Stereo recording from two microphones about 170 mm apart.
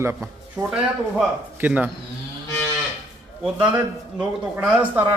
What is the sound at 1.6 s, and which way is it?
Speech, 10° right (ahead or behind).